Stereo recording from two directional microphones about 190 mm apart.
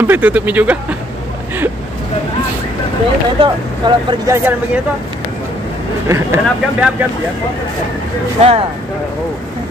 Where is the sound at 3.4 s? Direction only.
25° right (ahead or behind).